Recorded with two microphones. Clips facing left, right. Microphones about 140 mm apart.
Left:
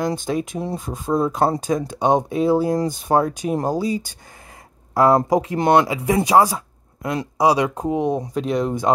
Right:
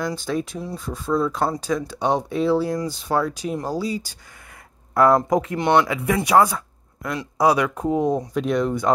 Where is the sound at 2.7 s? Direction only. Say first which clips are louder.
Left 4 dB; 50° left (ahead or behind).